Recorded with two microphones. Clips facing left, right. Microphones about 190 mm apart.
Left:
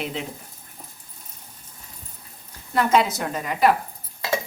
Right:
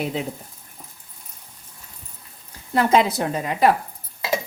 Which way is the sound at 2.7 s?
35° right (ahead or behind).